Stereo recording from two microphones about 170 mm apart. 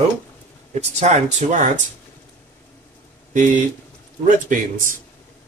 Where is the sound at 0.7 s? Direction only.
40° right (ahead or behind).